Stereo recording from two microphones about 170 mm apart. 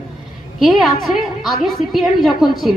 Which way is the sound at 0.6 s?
Centre (ahead or behind).